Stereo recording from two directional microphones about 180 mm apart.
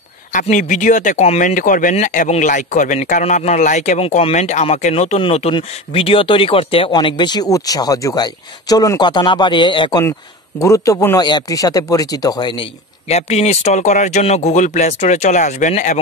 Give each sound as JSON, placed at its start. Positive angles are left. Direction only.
{"t": 0.3, "sound": "speech", "side_deg": 45}
{"t": 1.5, "sound": "a man's voice", "side_deg": 50}
{"t": 13.1, "sound": "speech", "side_deg": 35}